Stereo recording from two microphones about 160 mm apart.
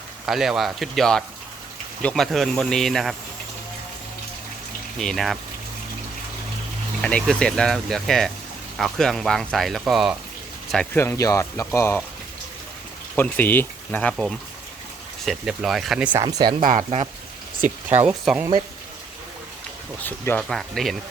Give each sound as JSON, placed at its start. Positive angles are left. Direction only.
{"t": 0.3, "sound": "speech", "side_deg": 0}
{"t": 4.9, "sound": "speech", "side_deg": 0}
{"t": 7.0, "sound": "speech", "side_deg": 5}
{"t": 10.9, "sound": "speech", "side_deg": 15}
{"t": 13.1, "sound": "speech", "side_deg": 10}
{"t": 16.1, "sound": "speech", "side_deg": -25}
{"t": 16.6, "sound": "speech", "side_deg": -60}
{"t": 17.8, "sound": "speech", "side_deg": -10}
{"t": 20.0, "sound": "speech", "side_deg": 10}